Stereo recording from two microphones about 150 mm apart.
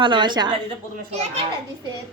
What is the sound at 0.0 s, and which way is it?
Speech, 30° right (ahead or behind).